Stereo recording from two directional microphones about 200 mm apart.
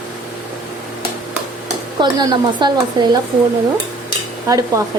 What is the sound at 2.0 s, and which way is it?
Speech, 20° right (ahead or behind).